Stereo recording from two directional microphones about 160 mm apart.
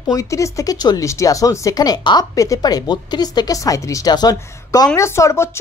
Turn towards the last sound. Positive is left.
turn(degrees=15)  # may be behind; listen again after turning